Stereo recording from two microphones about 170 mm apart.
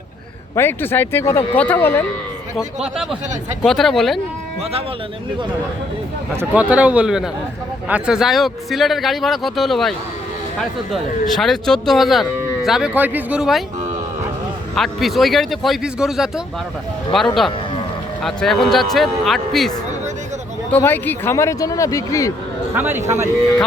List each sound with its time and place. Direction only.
0.5 s speech: 15° left (ahead or behind)
2.6 s a man's voice: 5° right (ahead or behind)
6.3 s a man's voice: 10° right (ahead or behind)
10.9 s a man's voice: centre (ahead or behind)
14.8 s a man's voice: centre (ahead or behind); by 22.3 s 20° left (ahead or behind)
22.7 s a man's voice: 15° right (ahead or behind)